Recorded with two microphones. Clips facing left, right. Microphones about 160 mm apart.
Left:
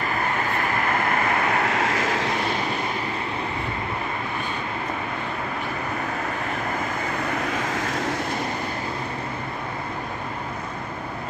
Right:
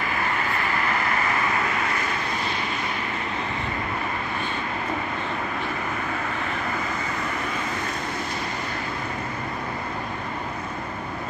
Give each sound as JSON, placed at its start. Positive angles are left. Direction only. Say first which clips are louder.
{"t": 1.5, "sound": "vehicle", "louder": "left 3 dB", "side_deg": 75}
{"t": 7.7, "sound": "vehicle", "louder": "left 3 dB", "side_deg": 90}